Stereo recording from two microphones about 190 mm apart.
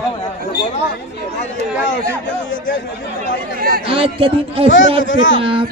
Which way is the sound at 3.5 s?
50° right (ahead or behind).